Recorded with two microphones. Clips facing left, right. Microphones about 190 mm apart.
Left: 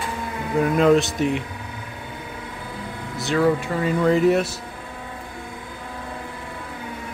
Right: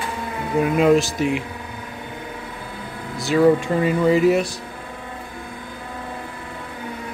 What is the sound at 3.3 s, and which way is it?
Speech, 20° right (ahead or behind).